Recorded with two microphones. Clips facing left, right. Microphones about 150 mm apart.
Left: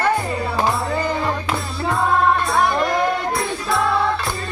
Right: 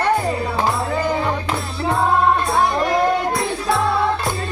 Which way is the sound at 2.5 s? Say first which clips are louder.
Even; 25° right (ahead or behind).